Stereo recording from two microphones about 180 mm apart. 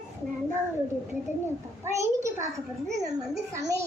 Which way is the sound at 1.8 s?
15° right (ahead or behind).